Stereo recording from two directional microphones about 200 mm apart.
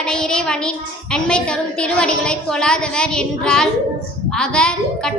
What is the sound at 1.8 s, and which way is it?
A woman's voice, 5° left (ahead or behind).